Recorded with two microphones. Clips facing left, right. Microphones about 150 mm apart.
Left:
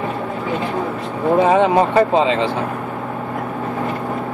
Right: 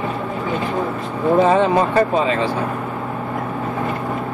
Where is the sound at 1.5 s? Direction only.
20° left (ahead or behind).